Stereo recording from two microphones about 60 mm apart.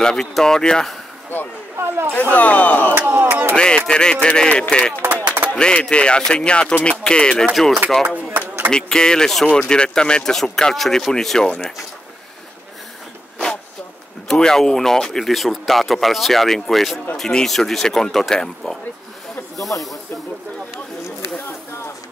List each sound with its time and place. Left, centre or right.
0.0 s speech: centre
1.8 s speech: right
2.3 s speech: left
3.0 s crowd: right
3.5 s speech: centre
5.1 s a sound: right
5.5 s speech: centre
7.5 s speech: centre
8.6 s speech: centre
14.2 s speech: centre
19.7 s speech: left